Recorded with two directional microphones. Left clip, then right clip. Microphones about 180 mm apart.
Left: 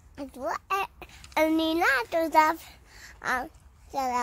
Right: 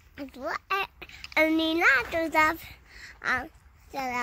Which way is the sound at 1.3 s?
15° left (ahead or behind).